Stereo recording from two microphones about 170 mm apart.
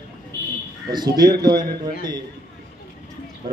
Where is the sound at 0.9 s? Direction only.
25° right (ahead or behind).